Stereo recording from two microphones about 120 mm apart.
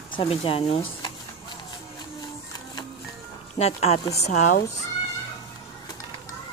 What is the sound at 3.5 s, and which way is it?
Speech, 60° left (ahead or behind).